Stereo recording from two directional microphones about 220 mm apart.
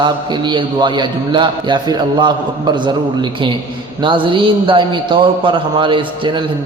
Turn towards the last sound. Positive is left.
turn(degrees=-20)  # may be behind; listen again after turning